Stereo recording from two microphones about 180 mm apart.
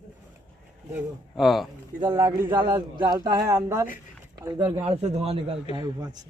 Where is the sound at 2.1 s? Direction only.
10° right (ahead or behind).